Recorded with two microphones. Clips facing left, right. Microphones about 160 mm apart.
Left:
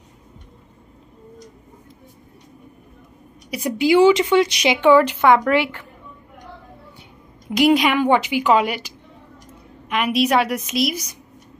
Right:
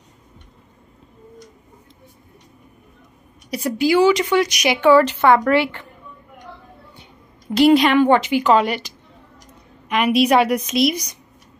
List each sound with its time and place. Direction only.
3.4 s a woman's voice: 10° left (ahead or behind)
3.7 s a woman's voice: 25° left (ahead or behind)
7.4 s a woman's voice: 10° left (ahead or behind)